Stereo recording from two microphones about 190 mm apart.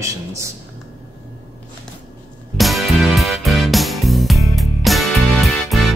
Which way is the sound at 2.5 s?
Centre (ahead or behind).